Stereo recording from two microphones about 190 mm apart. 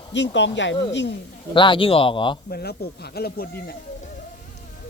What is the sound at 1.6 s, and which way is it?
Speech, 25° left (ahead or behind).